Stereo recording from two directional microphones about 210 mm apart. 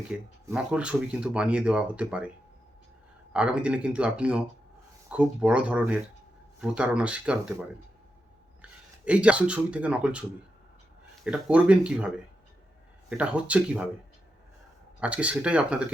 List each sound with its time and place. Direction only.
0.1 s speech: 5° right (ahead or behind)
3.3 s speech: 5° right (ahead or behind)
9.0 s speech: 5° right (ahead or behind)
15.0 s speech: 5° right (ahead or behind)